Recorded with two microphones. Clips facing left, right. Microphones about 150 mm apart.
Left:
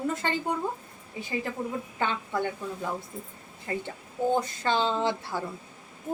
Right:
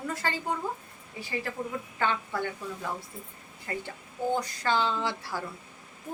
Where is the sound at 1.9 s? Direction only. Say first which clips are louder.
Right 1 dB; 20° left (ahead or behind).